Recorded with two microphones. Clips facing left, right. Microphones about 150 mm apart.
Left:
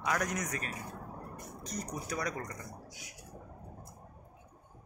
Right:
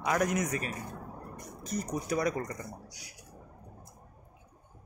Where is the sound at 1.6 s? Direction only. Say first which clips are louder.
Right 6 dB; 5° right (ahead or behind).